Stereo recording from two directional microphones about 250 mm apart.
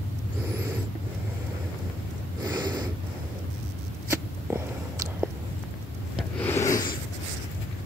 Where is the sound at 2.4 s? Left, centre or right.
Centre.